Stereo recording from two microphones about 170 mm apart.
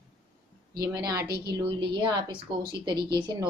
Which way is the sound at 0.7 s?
25° right (ahead or behind).